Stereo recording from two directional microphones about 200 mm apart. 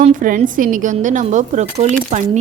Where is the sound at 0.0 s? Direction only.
40° right (ahead or behind).